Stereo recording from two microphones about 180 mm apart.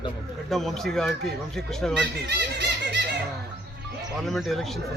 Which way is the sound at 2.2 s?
70° right (ahead or behind).